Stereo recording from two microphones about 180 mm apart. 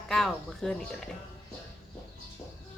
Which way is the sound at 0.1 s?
Centre (ahead or behind).